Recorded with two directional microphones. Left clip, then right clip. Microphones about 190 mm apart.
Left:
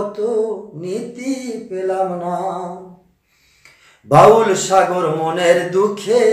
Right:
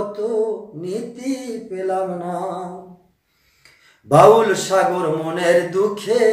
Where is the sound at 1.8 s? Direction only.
10° right (ahead or behind).